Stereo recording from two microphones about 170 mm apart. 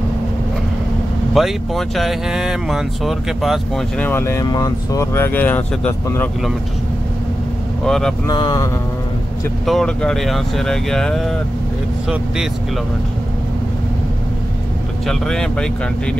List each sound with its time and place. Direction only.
1.3 s speech: centre (ahead or behind)
7.8 s speech: 5° left (ahead or behind)
8.3 s speech: 20° left (ahead or behind)
9.7 s speech: 5° left (ahead or behind)
15.0 s speech: 5° left (ahead or behind)